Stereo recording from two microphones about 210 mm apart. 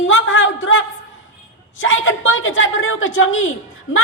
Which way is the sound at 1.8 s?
70° left (ahead or behind).